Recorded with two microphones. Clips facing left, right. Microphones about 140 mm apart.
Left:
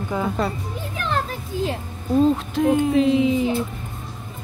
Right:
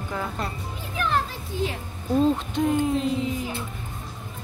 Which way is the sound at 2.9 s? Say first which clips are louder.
Left 8 dB; 90° left.